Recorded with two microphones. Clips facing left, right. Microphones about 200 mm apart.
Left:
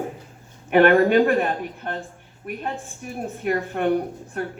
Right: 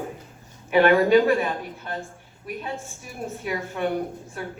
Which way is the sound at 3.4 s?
55° left (ahead or behind).